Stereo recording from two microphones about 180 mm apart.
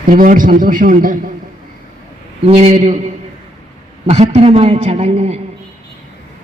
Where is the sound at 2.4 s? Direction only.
35° right (ahead or behind).